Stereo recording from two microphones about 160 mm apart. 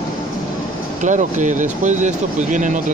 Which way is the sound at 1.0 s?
50° right (ahead or behind).